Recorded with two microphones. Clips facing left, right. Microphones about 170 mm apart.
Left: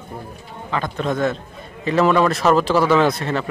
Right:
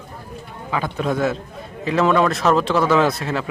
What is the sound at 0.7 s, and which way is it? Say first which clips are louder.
A man's voice: even; 5° right (ahead or behind).